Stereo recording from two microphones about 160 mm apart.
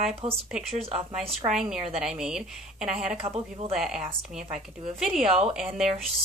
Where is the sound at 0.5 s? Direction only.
5° right (ahead or behind).